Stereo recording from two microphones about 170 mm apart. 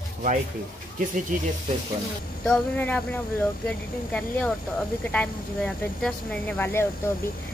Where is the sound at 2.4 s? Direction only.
5° left (ahead or behind).